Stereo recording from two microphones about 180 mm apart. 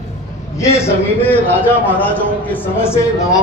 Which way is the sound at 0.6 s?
15° left (ahead or behind).